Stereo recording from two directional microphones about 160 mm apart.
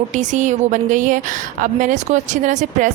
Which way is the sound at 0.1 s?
50° right (ahead or behind).